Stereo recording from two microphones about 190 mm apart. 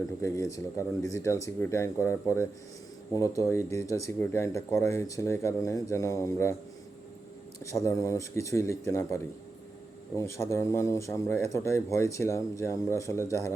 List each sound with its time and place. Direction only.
0.2 s speech: 15° left (ahead or behind)
7.6 s speech: 15° left (ahead or behind)